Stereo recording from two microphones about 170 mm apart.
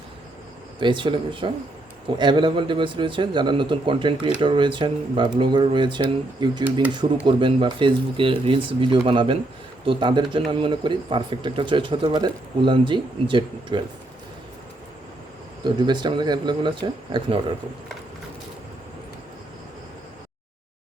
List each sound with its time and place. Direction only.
0.8 s speech: 30° right (ahead or behind)
15.6 s speech: 25° right (ahead or behind)